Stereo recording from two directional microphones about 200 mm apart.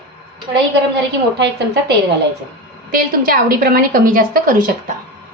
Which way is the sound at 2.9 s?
45° right (ahead or behind).